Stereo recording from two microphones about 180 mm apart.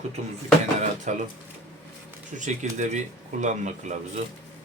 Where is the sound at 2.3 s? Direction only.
45° right (ahead or behind).